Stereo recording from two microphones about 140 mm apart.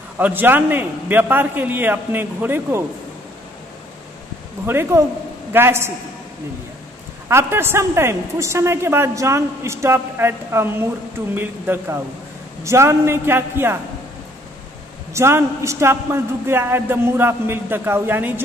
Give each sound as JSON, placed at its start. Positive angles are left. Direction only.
{"t": 0.2, "sound": "a man's voice", "side_deg": -15}
{"t": 4.6, "sound": "a man's voice", "side_deg": -15}
{"t": 7.2, "sound": "a woman's voice", "side_deg": -20}
{"t": 15.1, "sound": "a man's voice", "side_deg": -20}